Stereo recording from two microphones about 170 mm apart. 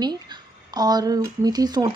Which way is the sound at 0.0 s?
25° right (ahead or behind).